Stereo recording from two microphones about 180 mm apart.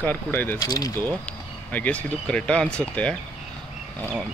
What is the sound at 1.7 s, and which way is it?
Speech, 10° left (ahead or behind).